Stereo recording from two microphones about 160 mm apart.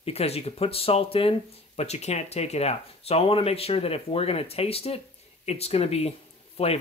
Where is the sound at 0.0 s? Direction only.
40° left (ahead or behind).